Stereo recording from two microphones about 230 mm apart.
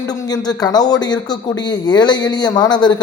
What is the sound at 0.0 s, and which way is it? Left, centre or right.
Speech, centre.